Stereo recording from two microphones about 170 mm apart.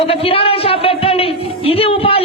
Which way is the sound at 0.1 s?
35° left (ahead or behind).